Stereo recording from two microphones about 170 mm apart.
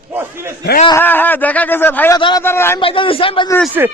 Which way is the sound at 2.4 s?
15° left (ahead or behind).